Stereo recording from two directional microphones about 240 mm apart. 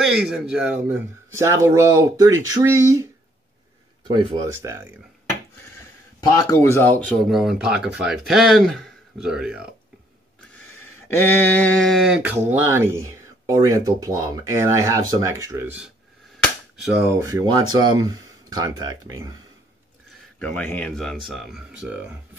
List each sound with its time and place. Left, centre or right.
0.0 s speech: centre
4.1 s speech: centre
6.3 s speech: centre
11.1 s speech: centre
20.3 s speech: centre